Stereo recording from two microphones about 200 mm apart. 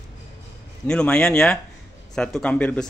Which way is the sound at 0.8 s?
5° left (ahead or behind).